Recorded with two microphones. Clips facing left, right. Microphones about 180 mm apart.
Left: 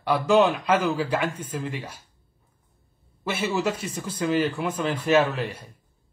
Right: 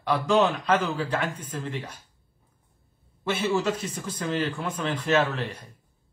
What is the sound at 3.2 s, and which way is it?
Speech, 10° left (ahead or behind).